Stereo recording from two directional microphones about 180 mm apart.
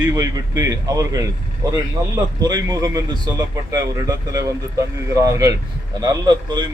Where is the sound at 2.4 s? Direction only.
20° right (ahead or behind).